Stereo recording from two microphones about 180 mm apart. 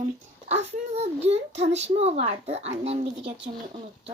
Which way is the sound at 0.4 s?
35° right (ahead or behind).